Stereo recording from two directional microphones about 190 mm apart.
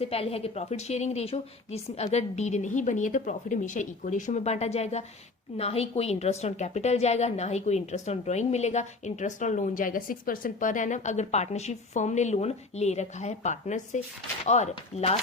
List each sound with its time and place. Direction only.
0.0 s a woman's voice: 30° left (ahead or behind)